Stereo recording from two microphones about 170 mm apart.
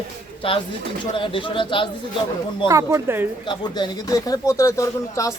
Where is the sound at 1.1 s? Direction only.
30° left (ahead or behind).